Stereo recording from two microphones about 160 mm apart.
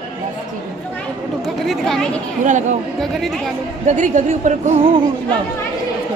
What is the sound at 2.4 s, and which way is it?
Speech, 50° right (ahead or behind).